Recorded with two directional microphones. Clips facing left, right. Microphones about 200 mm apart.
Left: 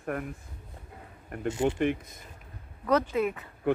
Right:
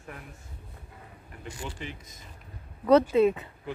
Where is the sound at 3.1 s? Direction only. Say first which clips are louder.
Right 6 dB; 25° right (ahead or behind).